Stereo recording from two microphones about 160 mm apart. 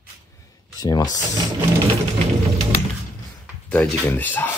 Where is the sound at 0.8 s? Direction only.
25° left (ahead or behind).